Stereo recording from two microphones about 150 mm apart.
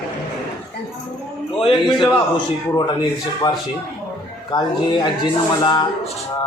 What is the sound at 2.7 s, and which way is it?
Speech, 30° left (ahead or behind).